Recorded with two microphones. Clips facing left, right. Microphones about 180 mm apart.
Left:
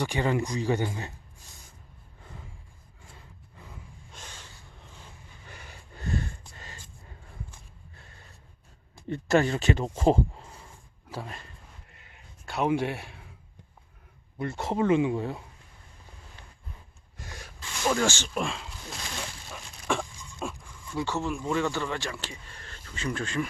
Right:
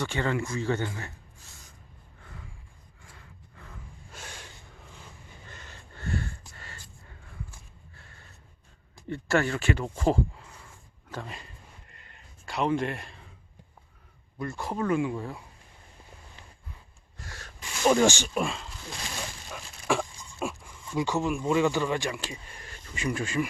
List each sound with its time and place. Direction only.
0.0 s speech: 15° left (ahead or behind)
4.1 s snort: 10° right (ahead or behind)
5.5 s snort: 10° left (ahead or behind)
6.6 s a sound: 20° left (ahead or behind)
9.0 s speech: 20° left (ahead or behind)
11.1 s a sound: 5° left (ahead or behind)
14.3 s speech: 25° left (ahead or behind)
17.2 s snort: 15° left (ahead or behind)
17.6 s speech: 15° right (ahead or behind)
18.3 s speech: centre (ahead or behind)